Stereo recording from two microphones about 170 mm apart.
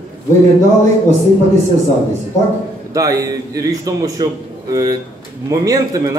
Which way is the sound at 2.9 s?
20° right (ahead or behind).